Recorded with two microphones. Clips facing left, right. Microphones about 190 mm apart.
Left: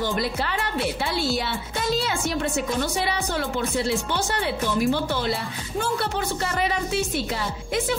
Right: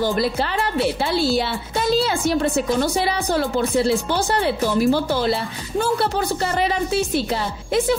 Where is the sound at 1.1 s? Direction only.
30° right (ahead or behind).